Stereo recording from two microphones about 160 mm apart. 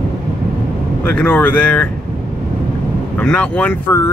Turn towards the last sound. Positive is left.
turn(degrees=15)  # may be behind; listen again after turning